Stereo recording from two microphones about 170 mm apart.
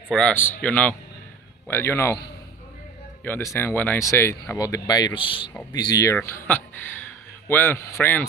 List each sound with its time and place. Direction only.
0.1 s speech: 10° left (ahead or behind)
3.3 s speech: 15° left (ahead or behind)